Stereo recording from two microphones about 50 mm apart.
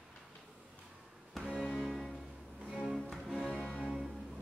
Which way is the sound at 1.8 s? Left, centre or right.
Centre.